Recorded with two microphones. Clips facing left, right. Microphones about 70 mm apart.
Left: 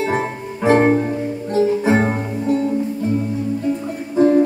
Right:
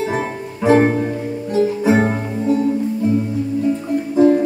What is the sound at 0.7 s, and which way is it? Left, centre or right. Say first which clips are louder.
Music: even; left.